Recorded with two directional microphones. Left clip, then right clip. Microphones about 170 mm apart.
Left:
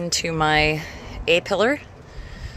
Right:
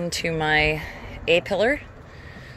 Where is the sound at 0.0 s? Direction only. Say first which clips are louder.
Left 3 dB; 40° left (ahead or behind).